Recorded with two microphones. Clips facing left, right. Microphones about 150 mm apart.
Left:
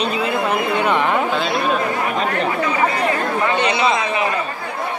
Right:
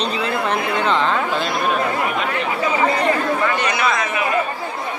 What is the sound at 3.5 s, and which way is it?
Speech, 25° left (ahead or behind).